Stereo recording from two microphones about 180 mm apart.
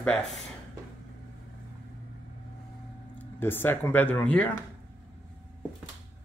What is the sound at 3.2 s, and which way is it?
Speech, 10° left (ahead or behind).